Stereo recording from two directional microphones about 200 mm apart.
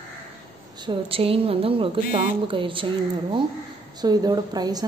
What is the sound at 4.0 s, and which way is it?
Speech, 20° right (ahead or behind).